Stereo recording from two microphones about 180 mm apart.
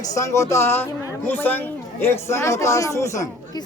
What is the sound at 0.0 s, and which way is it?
Speech, 20° left (ahead or behind).